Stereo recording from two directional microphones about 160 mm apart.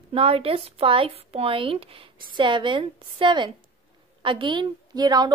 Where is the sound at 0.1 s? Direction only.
35° right (ahead or behind).